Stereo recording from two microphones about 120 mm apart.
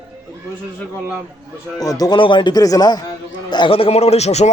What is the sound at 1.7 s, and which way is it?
A man's voice, 30° left (ahead or behind).